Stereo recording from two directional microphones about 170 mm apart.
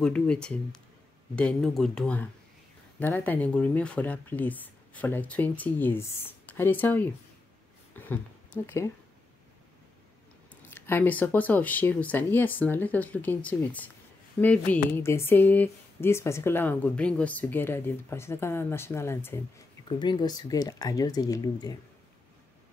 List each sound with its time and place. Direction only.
0.0 s speech: 5° left (ahead or behind)
8.6 s speech: 15° left (ahead or behind)
10.5 s speech: 10° left (ahead or behind)
19.9 s speech: 25° left (ahead or behind)